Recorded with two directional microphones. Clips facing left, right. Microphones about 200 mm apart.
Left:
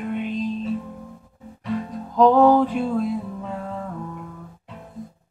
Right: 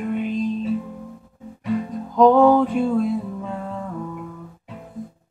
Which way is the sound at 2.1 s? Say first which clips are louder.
Right 1 dB; centre (ahead or behind).